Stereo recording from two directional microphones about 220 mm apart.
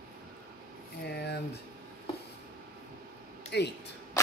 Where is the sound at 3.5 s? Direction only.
50° left (ahead or behind).